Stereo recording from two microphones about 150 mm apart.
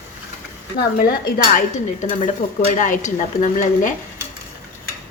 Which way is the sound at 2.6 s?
60° left (ahead or behind).